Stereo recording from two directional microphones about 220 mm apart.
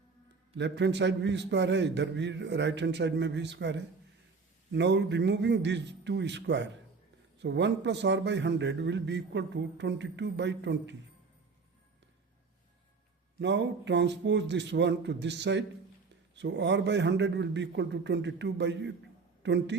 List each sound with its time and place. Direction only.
0.5 s a man's voice: 55° right (ahead or behind)
13.4 s a man's voice: 55° right (ahead or behind)